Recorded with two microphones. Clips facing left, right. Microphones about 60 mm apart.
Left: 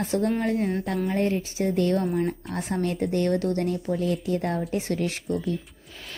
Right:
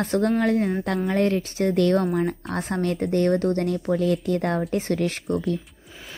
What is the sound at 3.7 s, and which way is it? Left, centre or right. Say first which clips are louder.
A woman's voice: right 4 dB; right.